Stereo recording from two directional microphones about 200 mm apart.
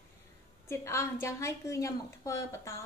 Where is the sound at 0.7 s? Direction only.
15° left (ahead or behind).